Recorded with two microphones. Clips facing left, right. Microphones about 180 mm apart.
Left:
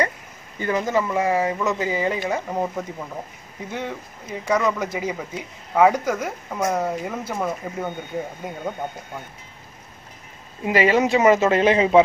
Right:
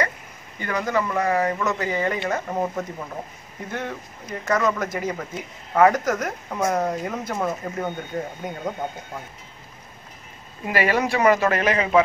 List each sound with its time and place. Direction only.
0.6 s speech: 20° left (ahead or behind); by 9.2 s centre (ahead or behind)
10.6 s speech: 20° left (ahead or behind)